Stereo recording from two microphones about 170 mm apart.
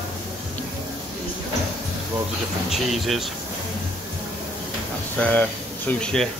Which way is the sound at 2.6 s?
Centre (ahead or behind).